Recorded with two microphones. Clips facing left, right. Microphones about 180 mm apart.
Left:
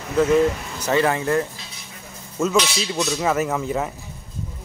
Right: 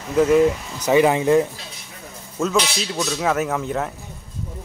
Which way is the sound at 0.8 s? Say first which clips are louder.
Right 4 dB; 15° right (ahead or behind).